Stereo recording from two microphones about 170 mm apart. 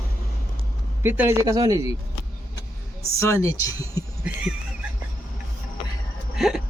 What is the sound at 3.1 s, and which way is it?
Speech, 15° left (ahead or behind).